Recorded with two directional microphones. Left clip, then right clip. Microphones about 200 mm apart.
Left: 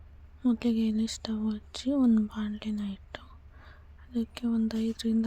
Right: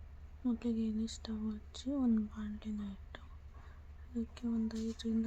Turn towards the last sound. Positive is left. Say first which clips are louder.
# left 9 dB
turn(degrees=40)  # may be behind; listen again after turning